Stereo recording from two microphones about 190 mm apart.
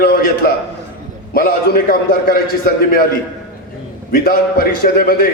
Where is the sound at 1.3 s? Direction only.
50° left (ahead or behind).